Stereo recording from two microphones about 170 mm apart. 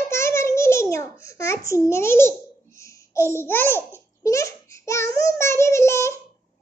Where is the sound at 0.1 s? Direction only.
15° left (ahead or behind).